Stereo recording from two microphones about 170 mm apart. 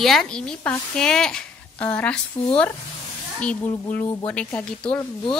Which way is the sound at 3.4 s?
10° left (ahead or behind).